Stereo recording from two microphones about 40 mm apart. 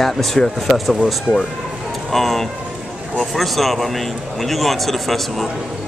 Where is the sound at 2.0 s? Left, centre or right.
Centre.